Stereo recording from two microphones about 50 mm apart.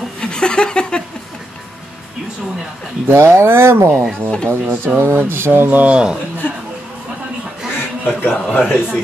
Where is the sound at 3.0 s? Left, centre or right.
Right.